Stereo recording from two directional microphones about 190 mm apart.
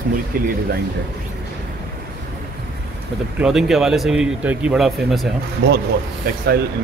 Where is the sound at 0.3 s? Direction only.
50° right (ahead or behind).